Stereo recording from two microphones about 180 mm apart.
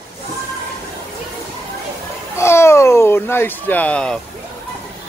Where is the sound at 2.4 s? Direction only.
15° left (ahead or behind).